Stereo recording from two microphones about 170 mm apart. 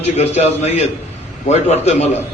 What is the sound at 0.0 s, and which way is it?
A man's voice, 40° left (ahead or behind).